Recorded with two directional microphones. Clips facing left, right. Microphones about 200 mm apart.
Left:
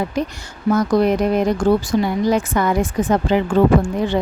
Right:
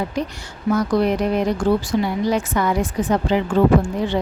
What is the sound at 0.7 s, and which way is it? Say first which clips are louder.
Speech: left 2 dB; 45° left (ahead or behind).